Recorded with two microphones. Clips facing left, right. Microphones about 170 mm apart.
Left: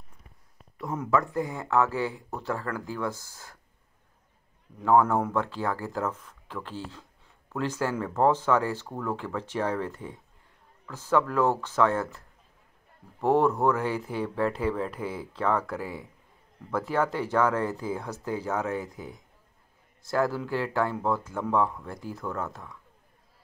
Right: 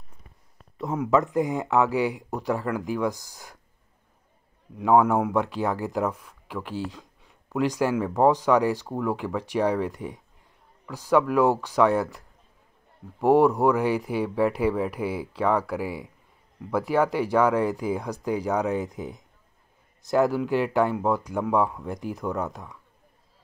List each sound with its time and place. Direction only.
0.9 s speech: 15° right (ahead or behind)
4.7 s speech: 15° right (ahead or behind)
13.2 s speech: 15° right (ahead or behind)